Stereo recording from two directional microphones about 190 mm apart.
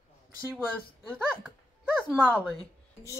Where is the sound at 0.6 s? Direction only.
10° left (ahead or behind).